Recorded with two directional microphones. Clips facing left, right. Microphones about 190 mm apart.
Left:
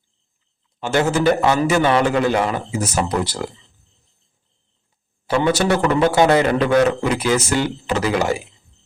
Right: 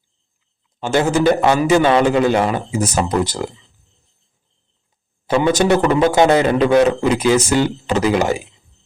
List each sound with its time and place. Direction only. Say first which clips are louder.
0.8 s a man's voice: right 2 dB; 20° right (ahead or behind)
5.2 s a man's voice: right 3 dB; 20° right (ahead or behind)